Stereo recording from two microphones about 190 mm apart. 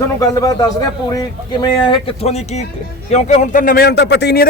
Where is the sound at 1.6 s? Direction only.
25° left (ahead or behind); by 4.4 s 60° left (ahead or behind).